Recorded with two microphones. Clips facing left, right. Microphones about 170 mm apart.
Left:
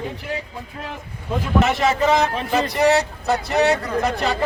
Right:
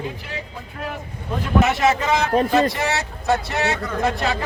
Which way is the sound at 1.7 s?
Centre (ahead or behind).